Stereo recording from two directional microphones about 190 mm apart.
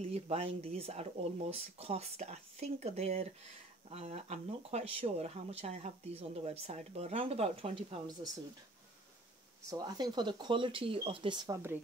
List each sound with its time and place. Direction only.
0.1 s speech: 30° right (ahead or behind)
9.7 s speech: 20° right (ahead or behind)